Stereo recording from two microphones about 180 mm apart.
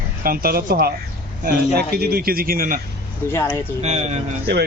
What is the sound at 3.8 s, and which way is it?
Speech, 40° right (ahead or behind).